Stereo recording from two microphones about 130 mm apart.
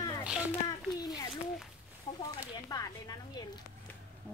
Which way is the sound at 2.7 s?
30° left (ahead or behind).